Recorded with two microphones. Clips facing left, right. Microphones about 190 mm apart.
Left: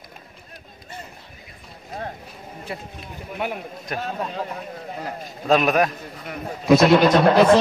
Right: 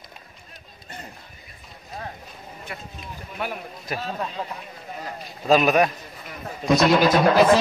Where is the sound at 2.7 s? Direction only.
30° left (ahead or behind).